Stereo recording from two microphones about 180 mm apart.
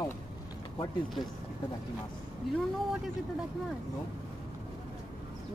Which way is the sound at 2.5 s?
Centre (ahead or behind).